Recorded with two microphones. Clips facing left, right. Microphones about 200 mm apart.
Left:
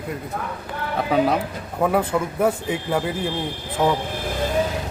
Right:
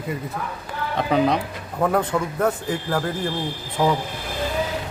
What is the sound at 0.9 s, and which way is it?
A man's voice, 5° left (ahead or behind).